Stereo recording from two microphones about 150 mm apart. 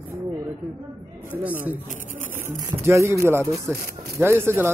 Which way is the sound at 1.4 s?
10° right (ahead or behind).